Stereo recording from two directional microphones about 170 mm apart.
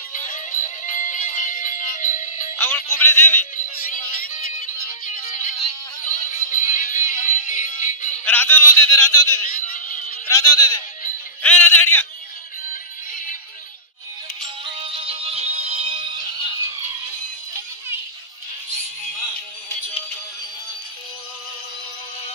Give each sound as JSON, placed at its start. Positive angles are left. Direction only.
{"t": 0.3, "sound": "music", "side_deg": 50}
{"t": 3.0, "sound": "a man's voice", "side_deg": 10}
{"t": 3.5, "sound": "music", "side_deg": 50}
{"t": 8.3, "sound": "a man's voice", "side_deg": 10}
{"t": 9.8, "sound": "a sound", "side_deg": 50}
{"t": 10.2, "sound": "a man's voice", "side_deg": 20}
{"t": 14.4, "sound": "music", "side_deg": -30}